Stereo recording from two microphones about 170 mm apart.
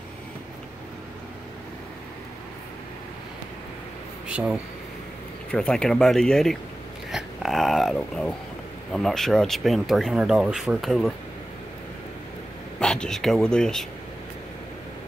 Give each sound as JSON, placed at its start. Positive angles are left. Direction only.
{"t": 4.3, "sound": "speech", "side_deg": -5}
{"t": 5.5, "sound": "speech", "side_deg": 5}
{"t": 7.1, "sound": "dog", "side_deg": 0}
{"t": 8.9, "sound": "speech", "side_deg": 5}
{"t": 12.7, "sound": "speech", "side_deg": 5}